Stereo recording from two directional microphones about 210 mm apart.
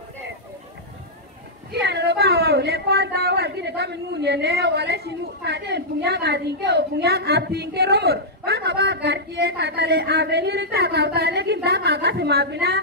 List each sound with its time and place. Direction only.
1.7 s a woman's voice: 55° right (ahead or behind)